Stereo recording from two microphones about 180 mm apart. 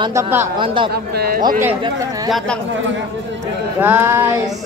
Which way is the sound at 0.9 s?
60° right (ahead or behind).